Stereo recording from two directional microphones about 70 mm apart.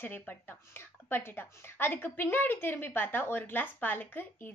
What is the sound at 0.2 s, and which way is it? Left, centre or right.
A woman's voice, left.